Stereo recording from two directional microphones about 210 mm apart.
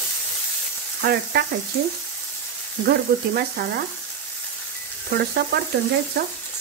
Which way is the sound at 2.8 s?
50° right (ahead or behind).